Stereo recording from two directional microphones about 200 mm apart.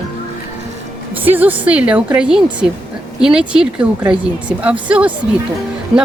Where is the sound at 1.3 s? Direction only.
10° right (ahead or behind).